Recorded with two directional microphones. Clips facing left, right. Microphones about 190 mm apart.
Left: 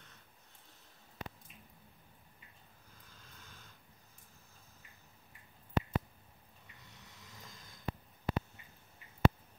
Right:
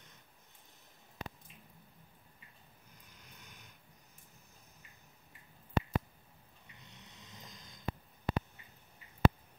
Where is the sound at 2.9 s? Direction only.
20° right (ahead or behind).